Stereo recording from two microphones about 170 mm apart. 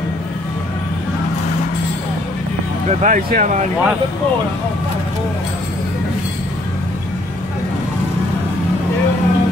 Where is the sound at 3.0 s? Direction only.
50° right (ahead or behind).